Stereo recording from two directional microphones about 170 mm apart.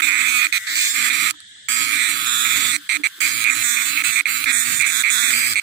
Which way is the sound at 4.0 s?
75° right (ahead or behind).